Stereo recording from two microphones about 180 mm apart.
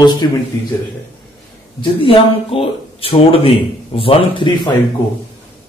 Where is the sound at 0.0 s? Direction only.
25° left (ahead or behind).